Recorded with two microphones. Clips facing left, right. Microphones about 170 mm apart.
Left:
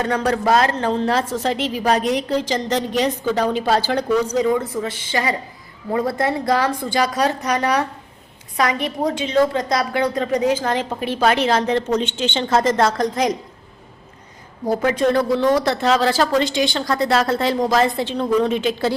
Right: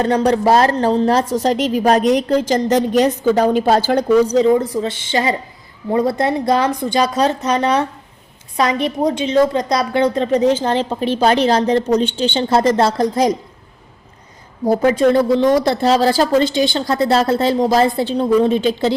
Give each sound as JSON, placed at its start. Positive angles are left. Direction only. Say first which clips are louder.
{"t": 0.0, "sound": "a woman's voice", "louder": "right 5 dB", "side_deg": -35}
{"t": 4.4, "sound": "a woman's voice", "louder": "right 5 dB", "side_deg": -30}
{"t": 14.7, "sound": "a woman's voice", "louder": "right 5 dB", "side_deg": -30}